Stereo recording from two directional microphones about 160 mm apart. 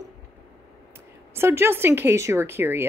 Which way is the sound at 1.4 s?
15° right (ahead or behind).